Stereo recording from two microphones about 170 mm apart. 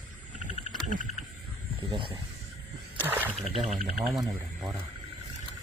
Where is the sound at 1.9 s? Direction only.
30° right (ahead or behind).